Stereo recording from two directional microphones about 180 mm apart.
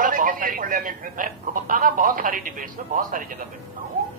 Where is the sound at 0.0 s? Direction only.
50° right (ahead or behind).